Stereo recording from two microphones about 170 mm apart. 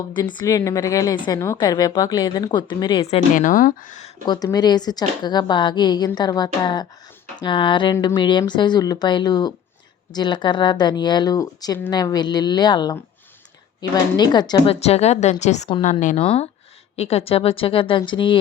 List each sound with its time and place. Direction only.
0.1 s a woman's voice: 25° left (ahead or behind)
3.3 s speech: 50° left (ahead or behind)
4.3 s a woman's voice: 20° left (ahead or behind); by 16.2 s 45° left (ahead or behind)
16.2 s a woman's voice: 35° left (ahead or behind)